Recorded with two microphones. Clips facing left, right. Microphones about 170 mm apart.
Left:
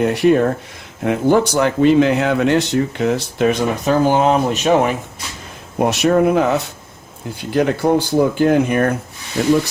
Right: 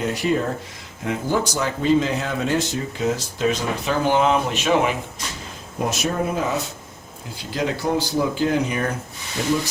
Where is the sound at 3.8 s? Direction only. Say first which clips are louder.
Left 4 dB; 40° left (ahead or behind).